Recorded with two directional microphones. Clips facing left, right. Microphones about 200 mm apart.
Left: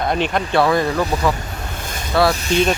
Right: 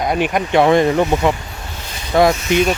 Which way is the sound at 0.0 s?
10° right (ahead or behind).